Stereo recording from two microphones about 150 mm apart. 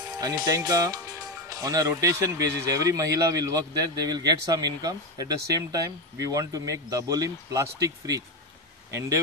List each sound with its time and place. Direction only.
0.2 s speech: 25° right (ahead or behind)